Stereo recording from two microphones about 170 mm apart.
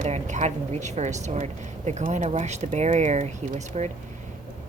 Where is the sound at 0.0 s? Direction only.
45° right (ahead or behind).